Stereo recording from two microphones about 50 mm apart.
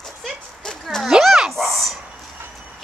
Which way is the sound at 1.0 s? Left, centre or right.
Centre.